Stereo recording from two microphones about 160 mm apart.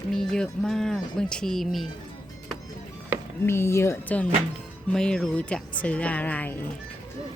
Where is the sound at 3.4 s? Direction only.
15° left (ahead or behind).